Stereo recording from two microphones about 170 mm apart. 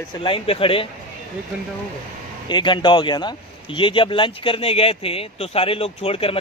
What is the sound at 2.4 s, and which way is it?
Speech, 25° left (ahead or behind).